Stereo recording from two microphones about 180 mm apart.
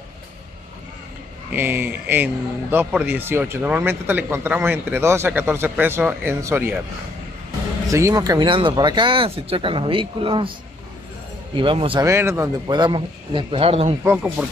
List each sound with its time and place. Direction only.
1.5 s a man's voice: 10° right (ahead or behind)
7.9 s speech: 15° right (ahead or behind)
11.5 s speech: 30° right (ahead or behind)
12.0 s speech: 15° right (ahead or behind); by 13.9 s 30° right (ahead or behind)
14.0 s a man's voice: 10° right (ahead or behind)